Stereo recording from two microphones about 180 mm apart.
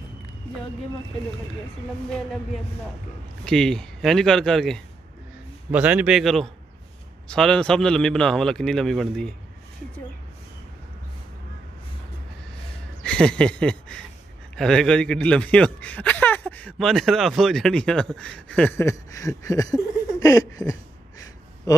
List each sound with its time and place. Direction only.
3.4 s a man's voice: 5° left (ahead or behind)
13.0 s a sound: 5° left (ahead or behind)
14.5 s speech: 5° left (ahead or behind); by 21.8 s 20° left (ahead or behind)